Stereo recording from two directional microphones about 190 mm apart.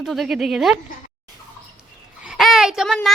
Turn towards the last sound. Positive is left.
turn(degrees=0)  # may be behind; listen again after turning